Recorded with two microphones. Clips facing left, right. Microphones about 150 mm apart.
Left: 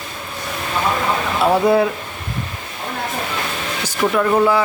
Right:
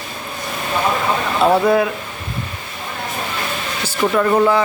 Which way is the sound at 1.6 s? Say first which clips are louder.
Left 1 dB; 25° left (ahead or behind).